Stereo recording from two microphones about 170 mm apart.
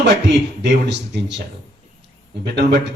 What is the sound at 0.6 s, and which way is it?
Speech, 90° right.